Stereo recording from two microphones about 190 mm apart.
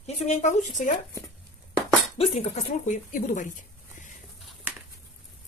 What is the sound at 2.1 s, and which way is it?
Speech, 35° left (ahead or behind).